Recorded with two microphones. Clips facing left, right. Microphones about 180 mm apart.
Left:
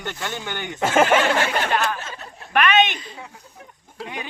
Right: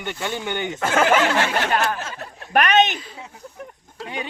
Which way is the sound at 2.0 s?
90° right.